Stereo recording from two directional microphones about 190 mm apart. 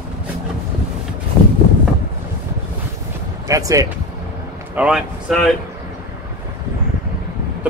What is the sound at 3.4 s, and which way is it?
Speech, 15° right (ahead or behind).